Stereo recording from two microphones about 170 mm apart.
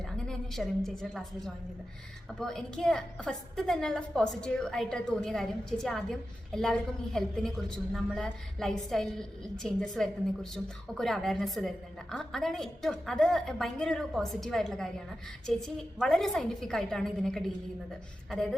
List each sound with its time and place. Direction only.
0.3 s a woman's voice: centre (ahead or behind)